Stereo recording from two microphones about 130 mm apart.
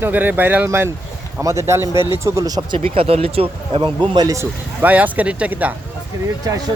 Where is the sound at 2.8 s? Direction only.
45° right (ahead or behind); by 4.4 s 30° right (ahead or behind).